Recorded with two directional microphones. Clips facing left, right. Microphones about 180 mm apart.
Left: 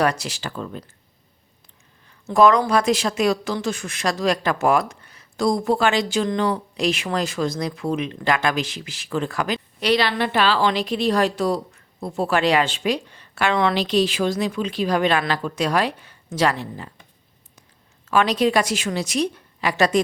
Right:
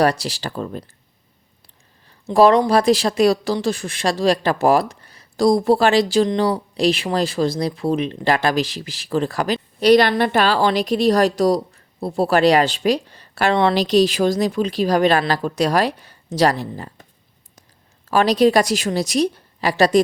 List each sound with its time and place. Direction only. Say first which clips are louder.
0.0 s speech: right 4 dB; 35° right (ahead or behind)
2.3 s speech: right 3 dB; 30° right (ahead or behind)
18.1 s speech: right 4 dB; 35° right (ahead or behind)